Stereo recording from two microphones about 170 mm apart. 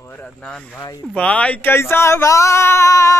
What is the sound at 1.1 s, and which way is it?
Speech, 5° left (ahead or behind).